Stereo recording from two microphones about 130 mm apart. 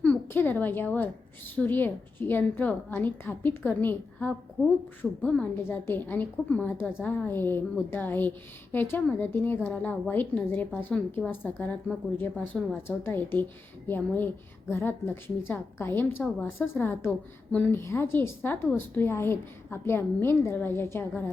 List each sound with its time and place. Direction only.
0.0 s a woman's voice: 15° left (ahead or behind)